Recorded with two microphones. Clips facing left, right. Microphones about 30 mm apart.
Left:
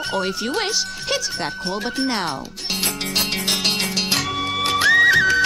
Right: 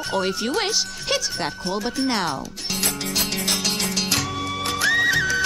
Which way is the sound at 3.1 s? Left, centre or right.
Left.